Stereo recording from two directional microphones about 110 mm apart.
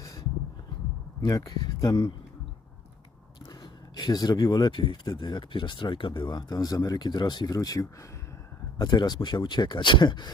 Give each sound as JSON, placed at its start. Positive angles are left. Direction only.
{"t": 0.0, "sound": "a sound", "side_deg": 35}
{"t": 1.4, "sound": "speech", "side_deg": 35}
{"t": 3.6, "sound": "speech", "side_deg": 40}